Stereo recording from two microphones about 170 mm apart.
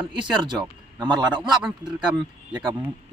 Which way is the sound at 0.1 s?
25° right (ahead or behind).